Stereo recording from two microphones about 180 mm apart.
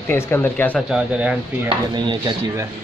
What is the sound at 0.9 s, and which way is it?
Speech, 5° right (ahead or behind).